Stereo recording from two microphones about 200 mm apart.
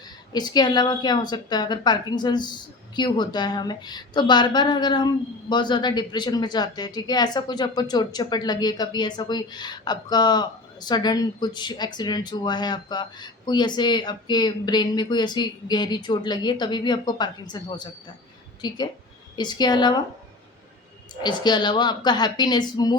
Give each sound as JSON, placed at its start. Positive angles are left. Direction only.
{"t": 0.3, "sound": "a woman's voice", "side_deg": 20}
{"t": 21.2, "sound": "a woman's voice", "side_deg": 20}